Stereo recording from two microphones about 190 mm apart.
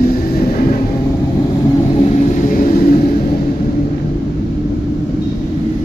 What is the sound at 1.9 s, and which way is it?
Vehicle, 35° left (ahead or behind).